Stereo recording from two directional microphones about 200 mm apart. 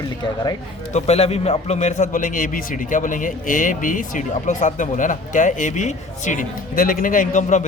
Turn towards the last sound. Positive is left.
turn(degrees=40)  # may be behind; listen again after turning